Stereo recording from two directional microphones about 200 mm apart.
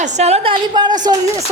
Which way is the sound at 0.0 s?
35° right (ahead or behind).